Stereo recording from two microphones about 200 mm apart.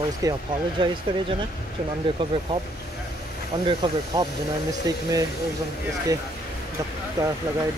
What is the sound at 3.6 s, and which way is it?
Speech, 25° right (ahead or behind).